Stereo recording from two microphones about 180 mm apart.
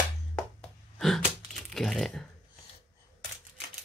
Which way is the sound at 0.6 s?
Centre (ahead or behind).